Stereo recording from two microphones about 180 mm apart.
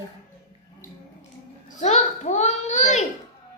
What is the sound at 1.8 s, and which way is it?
A child's voice, 40° left (ahead or behind).